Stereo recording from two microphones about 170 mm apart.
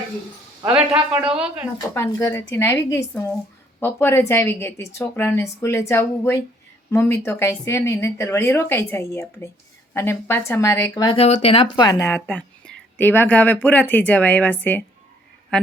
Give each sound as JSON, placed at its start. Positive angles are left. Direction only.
{"t": 0.6, "sound": "a woman's voice", "side_deg": -5}
{"t": 1.8, "sound": "speech", "side_deg": 15}
{"t": 11.2, "sound": "speech", "side_deg": 35}